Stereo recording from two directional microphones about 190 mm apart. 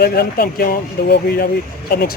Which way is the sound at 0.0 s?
50° left (ahead or behind).